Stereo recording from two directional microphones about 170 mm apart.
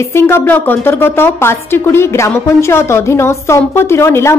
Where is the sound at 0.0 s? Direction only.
15° left (ahead or behind).